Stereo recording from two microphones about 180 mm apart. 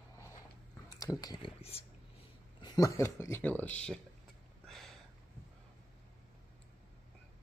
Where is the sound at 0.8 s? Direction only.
20° left (ahead or behind).